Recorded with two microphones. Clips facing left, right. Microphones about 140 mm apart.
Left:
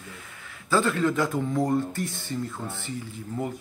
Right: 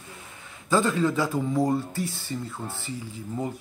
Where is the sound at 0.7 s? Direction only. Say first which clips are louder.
Even; 15° right (ahead or behind).